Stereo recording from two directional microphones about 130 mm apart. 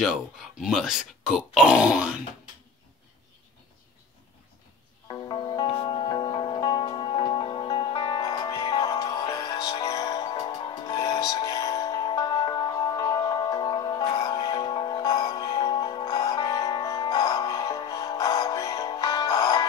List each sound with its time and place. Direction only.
0.0 s speech: 5° right (ahead or behind)
5.3 s music: 35° left (ahead or behind)